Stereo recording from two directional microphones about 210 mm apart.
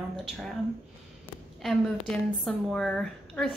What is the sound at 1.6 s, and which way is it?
A woman's voice, centre (ahead or behind).